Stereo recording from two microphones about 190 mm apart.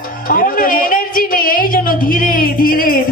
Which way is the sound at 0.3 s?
45° left (ahead or behind).